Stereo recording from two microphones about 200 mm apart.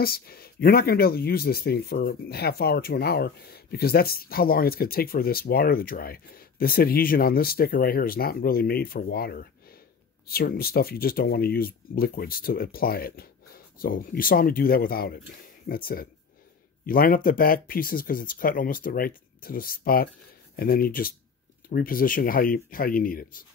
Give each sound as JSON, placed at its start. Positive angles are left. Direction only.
{"t": 0.0, "sound": "speech", "side_deg": 50}